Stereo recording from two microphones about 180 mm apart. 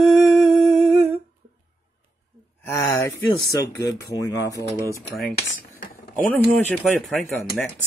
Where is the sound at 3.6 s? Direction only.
15° left (ahead or behind).